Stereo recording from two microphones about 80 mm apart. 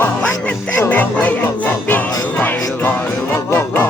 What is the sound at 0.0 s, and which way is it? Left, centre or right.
Music, centre.